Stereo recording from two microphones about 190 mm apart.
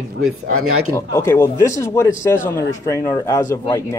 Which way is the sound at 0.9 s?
15° left (ahead or behind).